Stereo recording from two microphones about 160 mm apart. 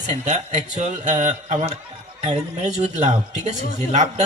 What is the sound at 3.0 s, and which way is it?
Speech, 45° right (ahead or behind).